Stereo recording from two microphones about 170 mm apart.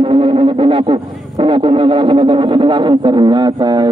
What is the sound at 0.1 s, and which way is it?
Music, 30° right (ahead or behind).